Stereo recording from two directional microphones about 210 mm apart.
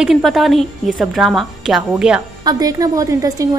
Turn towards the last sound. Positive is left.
turn(degrees=-15)  # may be behind; listen again after turning